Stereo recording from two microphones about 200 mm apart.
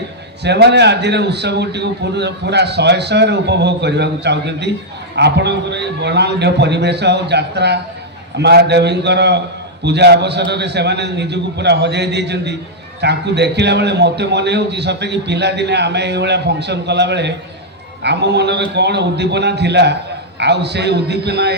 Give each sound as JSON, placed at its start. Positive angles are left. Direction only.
{"t": 0.4, "sound": "a man's voice", "side_deg": -55}